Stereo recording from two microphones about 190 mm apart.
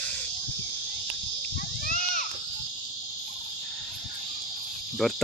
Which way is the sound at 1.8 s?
45° left (ahead or behind).